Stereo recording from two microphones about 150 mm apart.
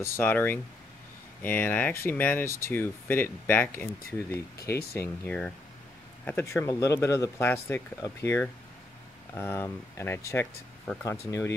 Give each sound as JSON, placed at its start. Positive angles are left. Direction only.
{"t": 0.0, "sound": "speech", "side_deg": 15}
{"t": 4.9, "sound": "speech", "side_deg": 15}